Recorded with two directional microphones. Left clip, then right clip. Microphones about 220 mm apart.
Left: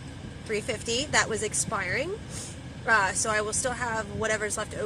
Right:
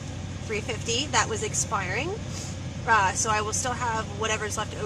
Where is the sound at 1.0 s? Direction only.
20° left (ahead or behind).